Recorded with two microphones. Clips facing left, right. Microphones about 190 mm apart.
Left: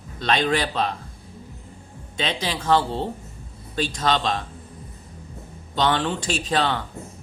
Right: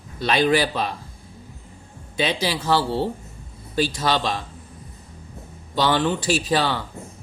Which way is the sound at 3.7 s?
5° right (ahead or behind).